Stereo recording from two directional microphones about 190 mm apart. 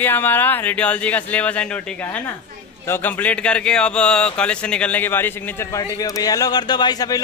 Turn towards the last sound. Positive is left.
turn(degrees=20)  # may be behind; listen again after turning